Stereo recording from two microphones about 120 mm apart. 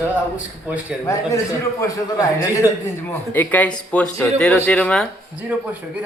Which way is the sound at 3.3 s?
15° left (ahead or behind).